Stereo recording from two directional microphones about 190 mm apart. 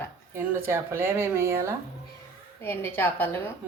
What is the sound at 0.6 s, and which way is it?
Speech, 10° right (ahead or behind).